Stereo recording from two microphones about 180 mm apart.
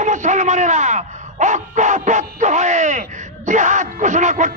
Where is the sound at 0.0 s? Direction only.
40° right (ahead or behind).